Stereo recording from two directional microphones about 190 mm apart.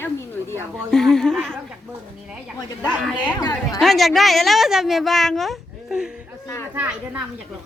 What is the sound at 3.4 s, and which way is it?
Speech, 20° left (ahead or behind).